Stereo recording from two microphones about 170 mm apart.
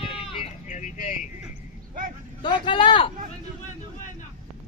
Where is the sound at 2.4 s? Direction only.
25° left (ahead or behind).